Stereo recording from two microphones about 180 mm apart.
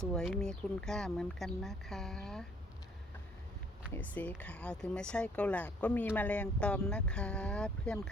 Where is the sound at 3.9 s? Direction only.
10° left (ahead or behind).